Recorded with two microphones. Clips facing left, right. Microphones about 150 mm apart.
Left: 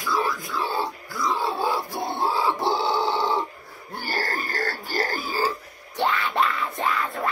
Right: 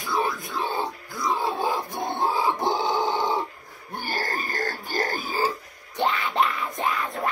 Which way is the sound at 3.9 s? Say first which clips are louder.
Left 1 dB; 15° right (ahead or behind).